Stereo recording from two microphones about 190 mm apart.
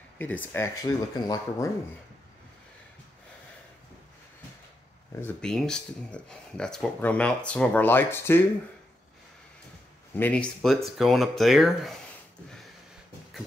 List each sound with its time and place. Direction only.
0.2 s speech: 10° left (ahead or behind)
5.2 s speech: 5° left (ahead or behind)
10.1 s speech: 5° left (ahead or behind)